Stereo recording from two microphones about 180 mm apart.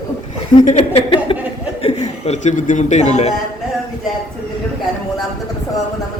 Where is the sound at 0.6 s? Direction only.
30° left (ahead or behind).